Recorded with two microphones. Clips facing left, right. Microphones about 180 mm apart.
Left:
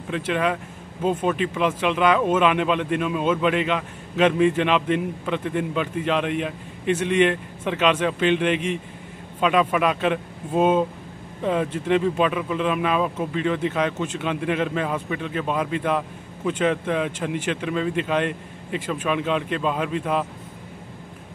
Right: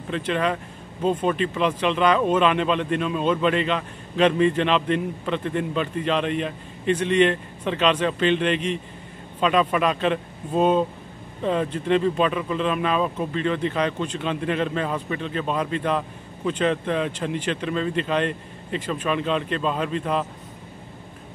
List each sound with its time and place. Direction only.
0.1 s speech: 10° left (ahead or behind)